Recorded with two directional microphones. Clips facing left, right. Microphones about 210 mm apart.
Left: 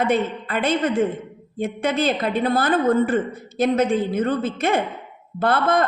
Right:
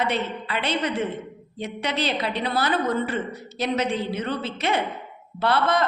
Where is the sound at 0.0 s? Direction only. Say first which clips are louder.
Left 5 dB; 50° left (ahead or behind).